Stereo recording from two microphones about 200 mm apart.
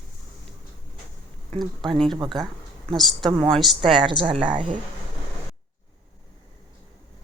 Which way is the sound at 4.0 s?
25° right (ahead or behind).